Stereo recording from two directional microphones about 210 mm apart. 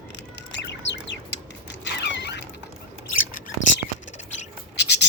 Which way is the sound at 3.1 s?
40° left (ahead or behind).